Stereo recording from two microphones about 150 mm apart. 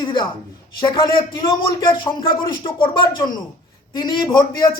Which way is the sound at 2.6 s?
35° left (ahead or behind).